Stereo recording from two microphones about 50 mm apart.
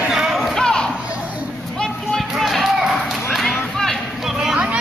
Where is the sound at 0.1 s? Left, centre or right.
Centre.